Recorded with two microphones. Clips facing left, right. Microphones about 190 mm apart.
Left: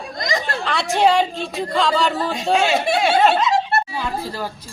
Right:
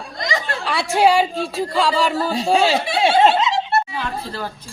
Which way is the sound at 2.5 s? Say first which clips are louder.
Right 1 dB; 35° right (ahead or behind).